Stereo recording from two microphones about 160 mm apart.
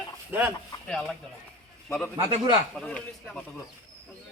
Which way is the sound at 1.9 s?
10° left (ahead or behind).